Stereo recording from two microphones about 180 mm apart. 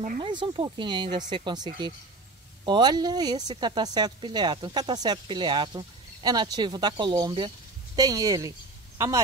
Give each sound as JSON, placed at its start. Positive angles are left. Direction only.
{"t": 0.2, "sound": "speech", "side_deg": -25}